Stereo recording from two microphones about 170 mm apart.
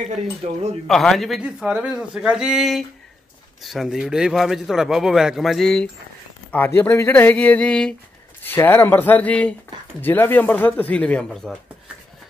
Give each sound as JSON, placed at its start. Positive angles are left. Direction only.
{"t": 0.1, "sound": "speech", "side_deg": -40}
{"t": 0.8, "sound": "a man's voice", "side_deg": 0}